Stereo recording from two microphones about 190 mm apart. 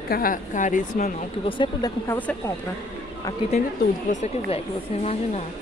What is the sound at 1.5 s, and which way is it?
Speech, 25° left (ahead or behind).